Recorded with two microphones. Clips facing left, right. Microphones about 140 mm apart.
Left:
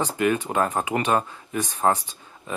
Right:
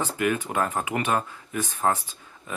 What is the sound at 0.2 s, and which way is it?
Speech, 25° left (ahead or behind).